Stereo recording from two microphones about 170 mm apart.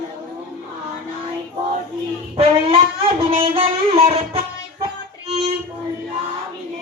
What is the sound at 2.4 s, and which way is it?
Music, 30° right (ahead or behind).